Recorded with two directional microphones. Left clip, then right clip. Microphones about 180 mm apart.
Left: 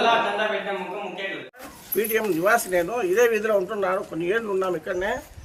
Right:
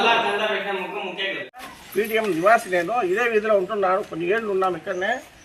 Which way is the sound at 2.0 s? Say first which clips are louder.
Right 1 dB; 30° left (ahead or behind).